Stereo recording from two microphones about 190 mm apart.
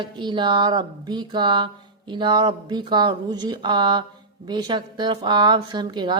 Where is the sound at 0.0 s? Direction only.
25° right (ahead or behind).